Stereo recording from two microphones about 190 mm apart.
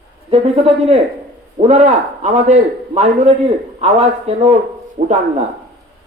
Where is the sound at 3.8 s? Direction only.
35° right (ahead or behind).